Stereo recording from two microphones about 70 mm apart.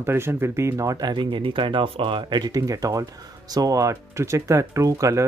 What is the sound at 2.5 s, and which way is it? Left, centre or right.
Speech, right.